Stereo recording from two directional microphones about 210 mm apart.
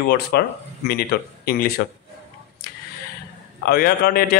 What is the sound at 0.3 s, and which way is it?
Speech, 45° left (ahead or behind).